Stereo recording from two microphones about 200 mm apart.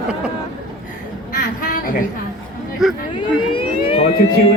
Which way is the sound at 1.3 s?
45° left (ahead or behind).